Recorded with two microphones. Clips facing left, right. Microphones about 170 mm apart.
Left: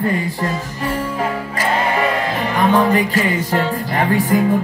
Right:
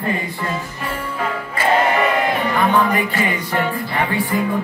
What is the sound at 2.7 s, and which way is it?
Music, 40° left (ahead or behind).